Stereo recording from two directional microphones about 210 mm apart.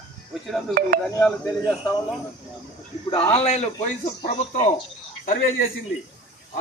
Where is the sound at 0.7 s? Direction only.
45° right (ahead or behind).